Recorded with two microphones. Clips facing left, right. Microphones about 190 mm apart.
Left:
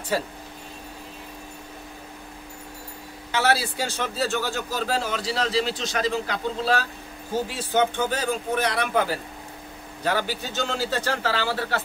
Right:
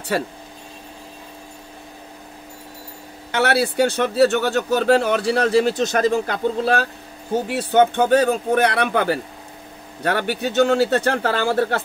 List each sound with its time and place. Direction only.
0.1 s speech: 70° right (ahead or behind)
3.3 s speech: 60° right (ahead or behind)